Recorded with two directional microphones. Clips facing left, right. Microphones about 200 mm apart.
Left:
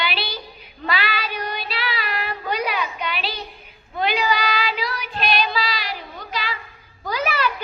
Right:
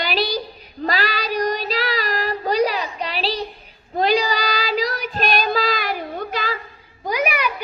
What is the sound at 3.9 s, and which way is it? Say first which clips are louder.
Child singing: right 3 dB; 35° right (ahead or behind).